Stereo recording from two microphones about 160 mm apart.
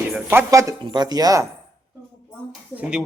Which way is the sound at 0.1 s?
15° right (ahead or behind).